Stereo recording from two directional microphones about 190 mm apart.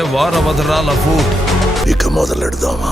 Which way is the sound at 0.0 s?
Centre (ahead or behind).